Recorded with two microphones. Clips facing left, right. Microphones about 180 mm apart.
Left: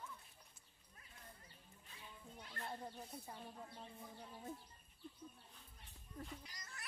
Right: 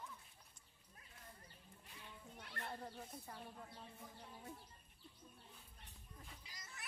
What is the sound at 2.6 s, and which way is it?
Speech, 15° left (ahead or behind).